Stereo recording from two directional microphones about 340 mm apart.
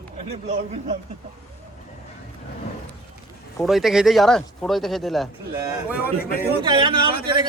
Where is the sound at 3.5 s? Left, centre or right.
Centre.